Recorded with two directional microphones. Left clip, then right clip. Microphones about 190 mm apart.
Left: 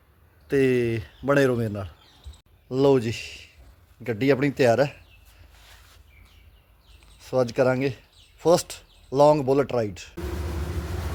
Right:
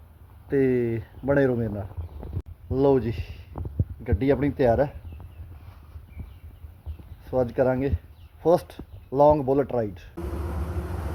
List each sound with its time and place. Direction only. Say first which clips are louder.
0.4 s speech: left 1 dB; 20° left (ahead or behind)
7.2 s speech: left 1 dB; 25° left (ahead or behind)